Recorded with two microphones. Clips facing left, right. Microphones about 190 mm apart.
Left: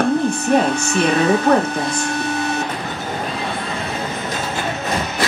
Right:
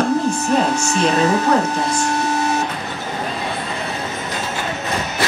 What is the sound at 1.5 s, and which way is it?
Speech, 55° left (ahead or behind).